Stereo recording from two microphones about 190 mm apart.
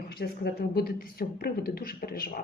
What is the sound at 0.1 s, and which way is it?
Speech, 55° left (ahead or behind).